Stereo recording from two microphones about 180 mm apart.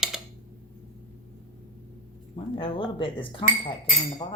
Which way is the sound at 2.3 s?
30° left (ahead or behind).